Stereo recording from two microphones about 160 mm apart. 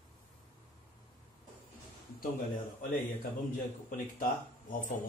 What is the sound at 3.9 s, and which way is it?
Speech, 55° left (ahead or behind).